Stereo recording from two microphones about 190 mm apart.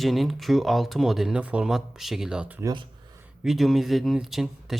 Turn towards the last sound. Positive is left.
turn(degrees=0)  # may be behind; listen again after turning